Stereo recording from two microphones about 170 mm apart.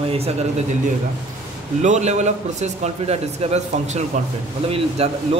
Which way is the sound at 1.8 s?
40° right (ahead or behind).